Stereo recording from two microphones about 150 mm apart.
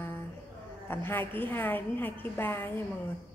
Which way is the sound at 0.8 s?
15° left (ahead or behind).